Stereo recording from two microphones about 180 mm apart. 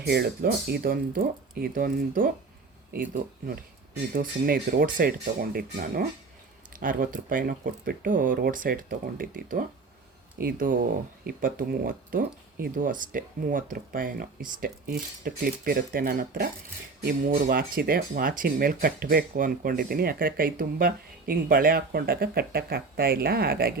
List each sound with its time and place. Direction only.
0.0 s speech: 65° right (ahead or behind)